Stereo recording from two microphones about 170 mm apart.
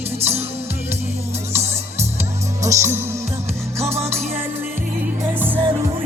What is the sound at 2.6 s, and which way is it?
Music, 15° right (ahead or behind).